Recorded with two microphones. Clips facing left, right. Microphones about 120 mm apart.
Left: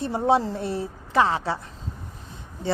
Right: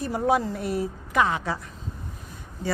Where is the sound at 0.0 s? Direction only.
25° left (ahead or behind).